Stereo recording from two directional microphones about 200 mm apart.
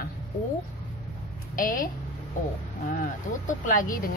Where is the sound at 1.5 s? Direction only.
45° left (ahead or behind).